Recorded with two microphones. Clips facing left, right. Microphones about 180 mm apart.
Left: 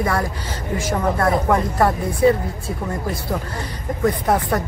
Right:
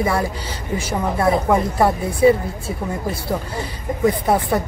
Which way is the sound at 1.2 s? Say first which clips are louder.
Right 3 dB; 10° right (ahead or behind).